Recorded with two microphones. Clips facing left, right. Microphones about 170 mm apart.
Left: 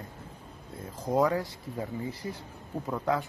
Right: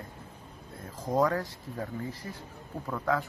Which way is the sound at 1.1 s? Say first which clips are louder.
Left 1 dB; 15° left (ahead or behind).